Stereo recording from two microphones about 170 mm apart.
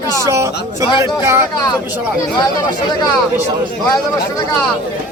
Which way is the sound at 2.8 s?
25° left (ahead or behind).